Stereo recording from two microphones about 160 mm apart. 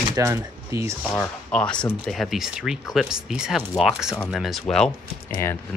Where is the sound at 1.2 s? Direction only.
5° left (ahead or behind).